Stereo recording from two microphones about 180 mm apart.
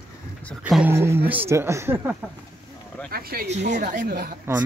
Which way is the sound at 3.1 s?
55° right (ahead or behind).